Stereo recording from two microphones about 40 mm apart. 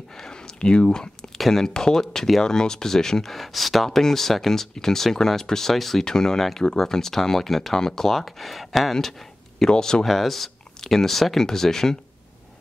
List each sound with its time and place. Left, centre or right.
0.1 s speech: centre
9.7 s speech: centre
10.0 s speech: centre